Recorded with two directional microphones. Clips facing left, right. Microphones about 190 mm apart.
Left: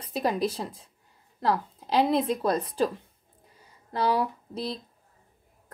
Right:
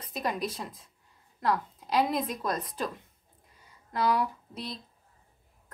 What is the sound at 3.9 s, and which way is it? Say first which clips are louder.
Speech: left 2 dB; 30° left (ahead or behind).